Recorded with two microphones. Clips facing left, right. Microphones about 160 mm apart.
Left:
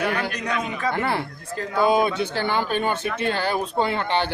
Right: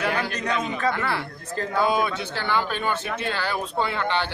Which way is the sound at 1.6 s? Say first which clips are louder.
Right 1 dB; 15° left (ahead or behind).